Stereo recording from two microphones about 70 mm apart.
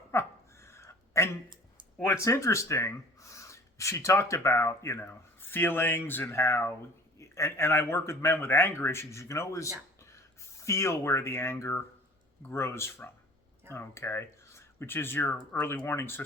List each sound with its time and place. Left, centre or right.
0.1 s a sound: left
2.2 s speech: left
4.9 s speech: left
6.3 s speech: left